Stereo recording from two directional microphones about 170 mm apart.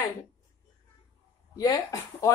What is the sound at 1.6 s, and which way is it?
Speech, 20° left (ahead or behind).